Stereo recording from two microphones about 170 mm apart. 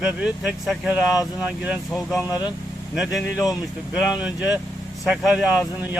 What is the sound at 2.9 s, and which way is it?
Speech, centre (ahead or behind).